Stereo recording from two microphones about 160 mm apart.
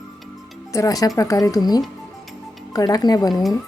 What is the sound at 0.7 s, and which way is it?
Speech, 20° left (ahead or behind).